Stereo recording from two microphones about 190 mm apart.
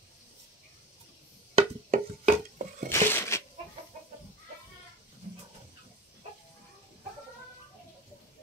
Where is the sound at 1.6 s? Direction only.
35° right (ahead or behind).